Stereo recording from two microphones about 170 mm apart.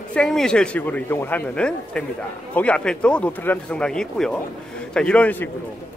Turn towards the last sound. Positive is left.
turn(degrees=10)  # may be behind; listen again after turning